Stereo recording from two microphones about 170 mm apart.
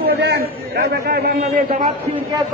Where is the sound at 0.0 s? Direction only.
65° right (ahead or behind).